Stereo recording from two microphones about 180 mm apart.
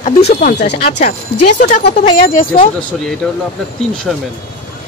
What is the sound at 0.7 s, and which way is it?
A woman's voice, 40° left (ahead or behind).